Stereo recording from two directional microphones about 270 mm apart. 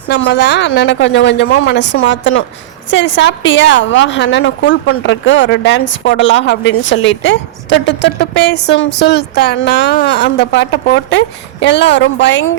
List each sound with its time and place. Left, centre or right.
0.1 s a woman's voice: left